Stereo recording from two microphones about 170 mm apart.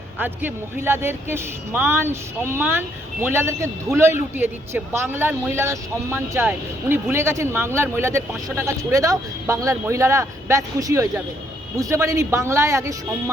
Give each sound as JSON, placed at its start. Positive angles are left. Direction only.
{"t": 0.2, "sound": "speech", "side_deg": -10}